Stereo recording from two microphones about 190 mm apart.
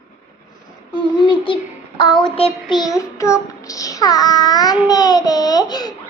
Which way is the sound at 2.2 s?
30° left (ahead or behind).